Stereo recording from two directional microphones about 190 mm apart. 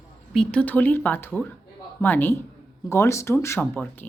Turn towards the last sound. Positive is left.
turn(degrees=10)  # may be behind; listen again after turning